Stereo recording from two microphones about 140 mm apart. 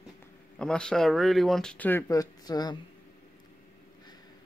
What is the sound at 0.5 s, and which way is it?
Speech, 5° left (ahead or behind).